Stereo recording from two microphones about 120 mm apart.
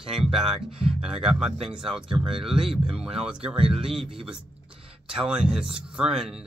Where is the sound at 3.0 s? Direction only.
5° right (ahead or behind).